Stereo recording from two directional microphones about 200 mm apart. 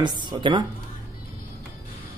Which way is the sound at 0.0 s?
20° right (ahead or behind).